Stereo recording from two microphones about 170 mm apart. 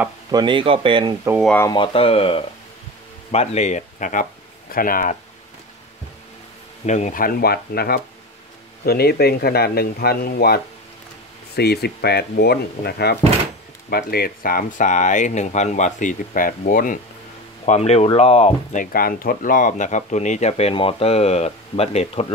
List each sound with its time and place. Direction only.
0.3 s speech: 25° right (ahead or behind)
1.4 s speech: 10° left (ahead or behind)
1.7 s speech: 30° left (ahead or behind); by 5.1 s 55° left (ahead or behind)
6.9 s speech: 45° left (ahead or behind)
17.6 s speech: 40° left (ahead or behind)
18.8 s speech: 55° left (ahead or behind); by 22.3 s 35° left (ahead or behind)